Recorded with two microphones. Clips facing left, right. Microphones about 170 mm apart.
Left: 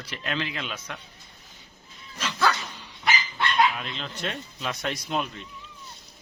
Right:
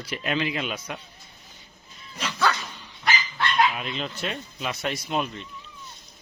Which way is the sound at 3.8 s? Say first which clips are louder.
Right 3 dB; 10° right (ahead or behind).